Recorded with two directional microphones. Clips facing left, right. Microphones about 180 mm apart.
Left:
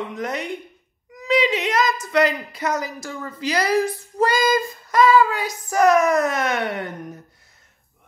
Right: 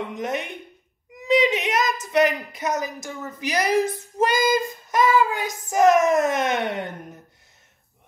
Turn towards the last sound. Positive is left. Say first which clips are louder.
# even
turn(degrees=-20)  # may be behind; listen again after turning